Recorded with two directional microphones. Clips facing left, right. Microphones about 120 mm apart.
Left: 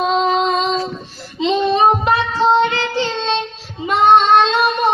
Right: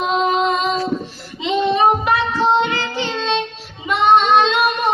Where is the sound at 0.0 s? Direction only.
35° left (ahead or behind).